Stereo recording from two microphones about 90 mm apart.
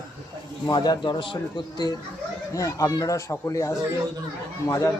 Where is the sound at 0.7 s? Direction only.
50° left (ahead or behind).